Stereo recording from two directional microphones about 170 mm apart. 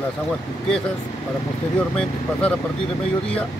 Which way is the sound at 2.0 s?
5° left (ahead or behind).